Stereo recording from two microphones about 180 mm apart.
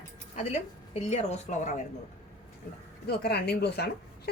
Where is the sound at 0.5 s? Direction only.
40° left (ahead or behind).